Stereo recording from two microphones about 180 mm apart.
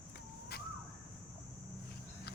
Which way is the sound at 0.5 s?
60° left (ahead or behind).